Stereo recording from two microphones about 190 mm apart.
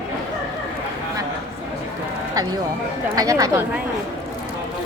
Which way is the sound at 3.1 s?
20° right (ahead or behind).